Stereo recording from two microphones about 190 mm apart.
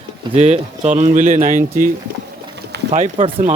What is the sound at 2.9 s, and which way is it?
Speech, 30° right (ahead or behind).